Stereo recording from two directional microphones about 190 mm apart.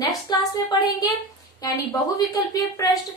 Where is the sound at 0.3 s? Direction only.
20° left (ahead or behind).